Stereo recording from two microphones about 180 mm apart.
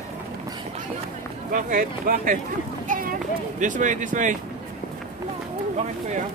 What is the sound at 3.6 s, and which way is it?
Speech, 45° right (ahead or behind).